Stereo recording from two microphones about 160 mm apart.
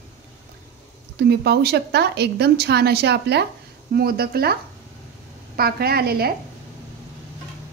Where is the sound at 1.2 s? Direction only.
90° right.